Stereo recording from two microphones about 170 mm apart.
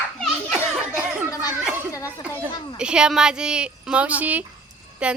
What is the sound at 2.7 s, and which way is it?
A woman's voice, 5° right (ahead or behind).